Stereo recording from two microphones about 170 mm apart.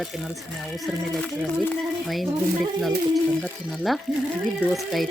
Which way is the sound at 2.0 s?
Centre (ahead or behind).